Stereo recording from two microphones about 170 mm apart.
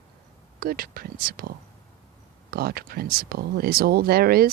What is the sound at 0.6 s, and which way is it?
Speech, 60° right (ahead or behind).